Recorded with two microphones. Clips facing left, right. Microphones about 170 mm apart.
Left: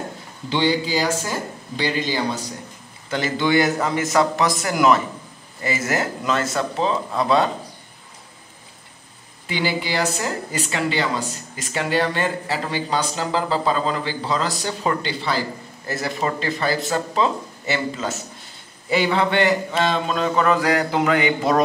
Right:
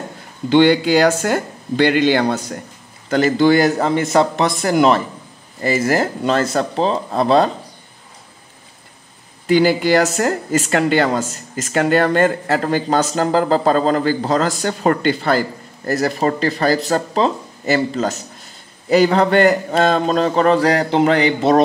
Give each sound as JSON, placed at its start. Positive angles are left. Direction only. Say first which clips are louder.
{"t": 0.5, "sound": "speech", "louder": "right 8 dB", "side_deg": -60}
{"t": 3.1, "sound": "speech", "louder": "right 7 dB", "side_deg": -40}
{"t": 9.5, "sound": "speech", "louder": "right 11 dB", "side_deg": -45}